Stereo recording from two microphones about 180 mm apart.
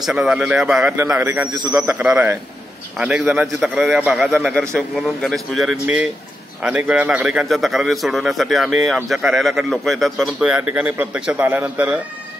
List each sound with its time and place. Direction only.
0.0 s a man's voice: 5° right (ahead or behind)
1.5 s a man's voice: 25° right (ahead or behind)
1.9 s a man's voice: 10° right (ahead or behind)